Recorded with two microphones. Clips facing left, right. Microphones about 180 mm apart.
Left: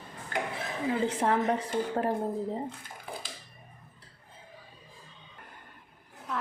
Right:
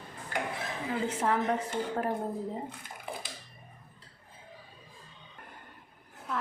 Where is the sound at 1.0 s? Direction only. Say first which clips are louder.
Left 1 dB; 35° left (ahead or behind).